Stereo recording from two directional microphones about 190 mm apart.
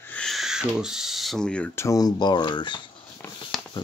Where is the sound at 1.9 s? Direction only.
20° left (ahead or behind).